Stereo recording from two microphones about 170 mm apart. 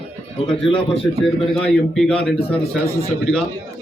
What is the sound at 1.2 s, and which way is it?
Speech, centre (ahead or behind).